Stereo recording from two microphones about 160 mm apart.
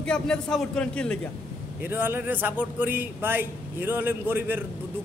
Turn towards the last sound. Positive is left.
turn(degrees=-15)  # may be behind; listen again after turning